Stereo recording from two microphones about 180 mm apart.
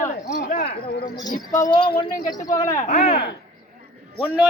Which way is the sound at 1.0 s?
20° left (ahead or behind).